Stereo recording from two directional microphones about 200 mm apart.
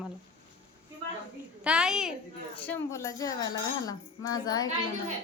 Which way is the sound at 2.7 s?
15° left (ahead or behind).